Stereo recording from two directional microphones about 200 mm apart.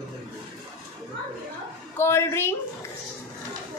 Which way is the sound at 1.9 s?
10° left (ahead or behind).